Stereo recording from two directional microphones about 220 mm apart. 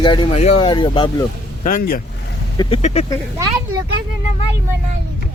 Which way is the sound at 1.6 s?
35° left (ahead or behind).